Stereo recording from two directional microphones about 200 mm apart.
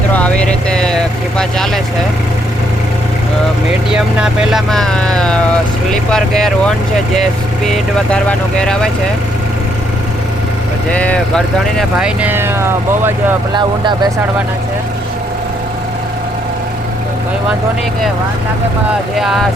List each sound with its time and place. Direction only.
0.1 s vehicle: 5° left (ahead or behind)
3.8 s speech: 5° right (ahead or behind)
10.9 s speech: 5° left (ahead or behind); by 14.1 s 20° right (ahead or behind)
19.1 s speech: centre (ahead or behind)